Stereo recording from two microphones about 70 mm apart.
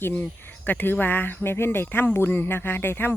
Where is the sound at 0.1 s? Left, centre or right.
Left.